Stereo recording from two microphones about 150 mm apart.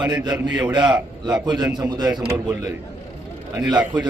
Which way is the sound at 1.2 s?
30° right (ahead or behind).